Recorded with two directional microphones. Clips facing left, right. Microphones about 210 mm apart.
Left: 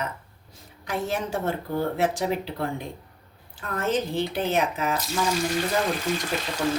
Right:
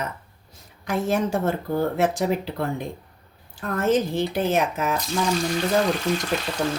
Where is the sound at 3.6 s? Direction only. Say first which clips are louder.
Right 5 dB; 45° right (ahead or behind).